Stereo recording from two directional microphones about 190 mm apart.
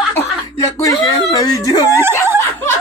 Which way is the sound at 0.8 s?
20° left (ahead or behind).